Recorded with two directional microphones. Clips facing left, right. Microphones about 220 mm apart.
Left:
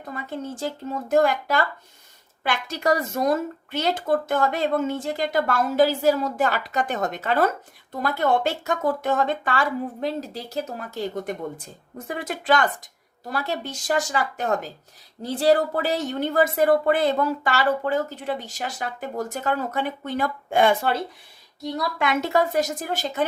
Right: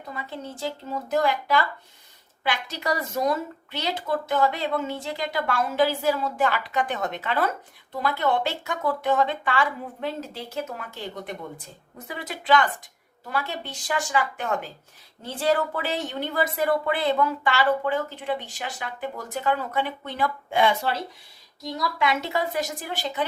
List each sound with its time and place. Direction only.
0.0 s a woman's voice: 50° left (ahead or behind)
21.9 s speech: 50° left (ahead or behind)